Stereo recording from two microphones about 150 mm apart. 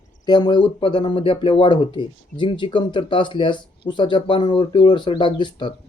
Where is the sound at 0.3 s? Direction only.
30° left (ahead or behind).